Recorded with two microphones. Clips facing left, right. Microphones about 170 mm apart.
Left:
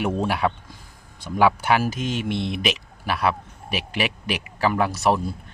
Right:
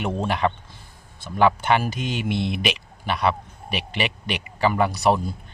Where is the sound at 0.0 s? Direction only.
5° left (ahead or behind).